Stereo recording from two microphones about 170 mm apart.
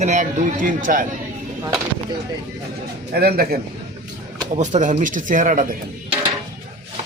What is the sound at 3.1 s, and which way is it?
Speech, 65° right (ahead or behind).